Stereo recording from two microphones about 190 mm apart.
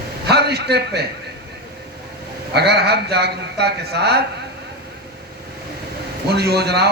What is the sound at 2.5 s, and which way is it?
A man's voice, 60° right (ahead or behind).